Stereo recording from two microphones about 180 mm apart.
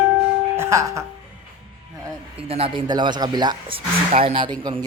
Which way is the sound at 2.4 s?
35° right (ahead or behind).